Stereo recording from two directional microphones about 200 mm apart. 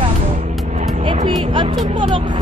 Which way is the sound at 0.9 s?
30° right (ahead or behind).